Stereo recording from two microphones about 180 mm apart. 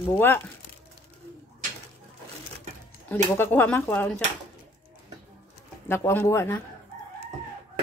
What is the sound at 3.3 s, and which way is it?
Speech, 10° left (ahead or behind).